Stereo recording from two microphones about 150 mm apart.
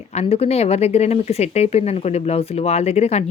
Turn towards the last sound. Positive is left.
turn(degrees=45)  # may be behind; listen again after turning